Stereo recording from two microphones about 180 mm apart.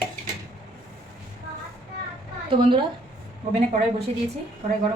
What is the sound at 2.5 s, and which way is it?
Speech, 30° right (ahead or behind).